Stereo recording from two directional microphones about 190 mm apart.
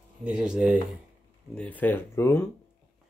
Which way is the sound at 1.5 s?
5° left (ahead or behind).